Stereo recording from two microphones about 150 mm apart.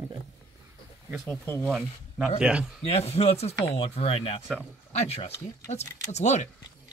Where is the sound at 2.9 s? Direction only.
45° left (ahead or behind).